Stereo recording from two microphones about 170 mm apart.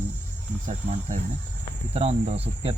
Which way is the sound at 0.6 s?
45° right (ahead or behind).